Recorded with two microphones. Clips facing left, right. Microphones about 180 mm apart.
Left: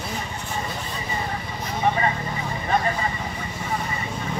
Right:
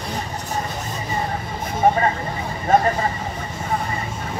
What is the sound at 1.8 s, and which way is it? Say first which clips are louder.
Vehicle: right 5 dB; 45° right (ahead or behind).